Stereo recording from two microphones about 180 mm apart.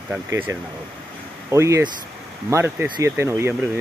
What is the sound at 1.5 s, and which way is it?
Speech, 15° right (ahead or behind).